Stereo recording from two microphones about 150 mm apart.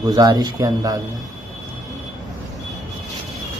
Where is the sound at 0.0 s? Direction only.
25° right (ahead or behind).